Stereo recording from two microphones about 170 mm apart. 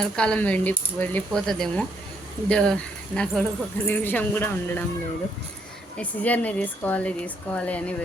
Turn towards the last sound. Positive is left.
turn(degrees=10)  # may be behind; listen again after turning